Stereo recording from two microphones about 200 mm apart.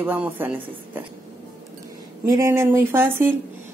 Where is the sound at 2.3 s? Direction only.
15° right (ahead or behind).